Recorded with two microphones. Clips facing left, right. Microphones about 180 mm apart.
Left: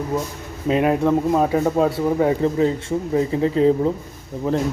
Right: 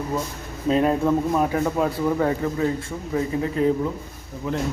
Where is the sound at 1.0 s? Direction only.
25° left (ahead or behind).